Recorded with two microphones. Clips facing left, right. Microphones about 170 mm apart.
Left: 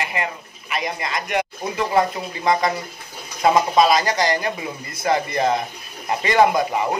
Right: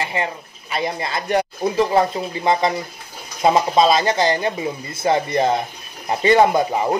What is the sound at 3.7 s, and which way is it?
Speech, 25° right (ahead or behind).